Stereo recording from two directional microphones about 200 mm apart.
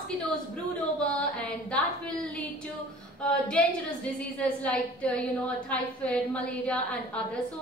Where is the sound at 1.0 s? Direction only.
5° left (ahead or behind).